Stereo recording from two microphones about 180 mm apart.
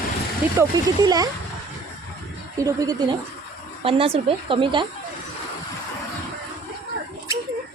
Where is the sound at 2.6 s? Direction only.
20° right (ahead or behind).